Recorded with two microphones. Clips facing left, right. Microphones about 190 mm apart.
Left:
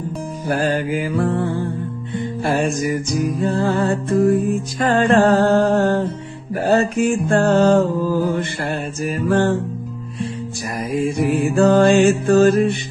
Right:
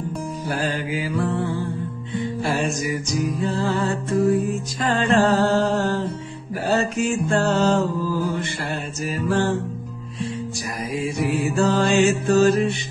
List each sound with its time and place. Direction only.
0.5 s music: 55° left (ahead or behind)
10.9 s music: 55° left (ahead or behind)